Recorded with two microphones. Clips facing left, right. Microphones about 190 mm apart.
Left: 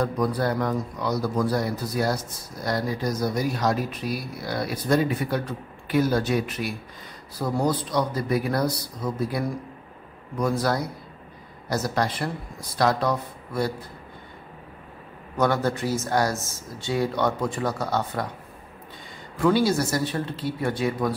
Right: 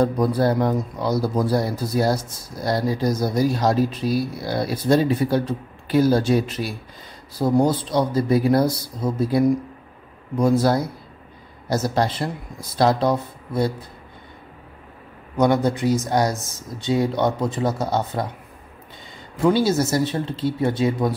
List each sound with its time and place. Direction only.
0.0 s speech: 30° right (ahead or behind)
15.3 s speech: 20° right (ahead or behind)
19.3 s speech: 20° right (ahead or behind)